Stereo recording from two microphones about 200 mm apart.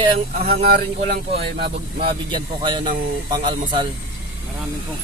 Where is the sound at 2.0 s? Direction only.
25° right (ahead or behind).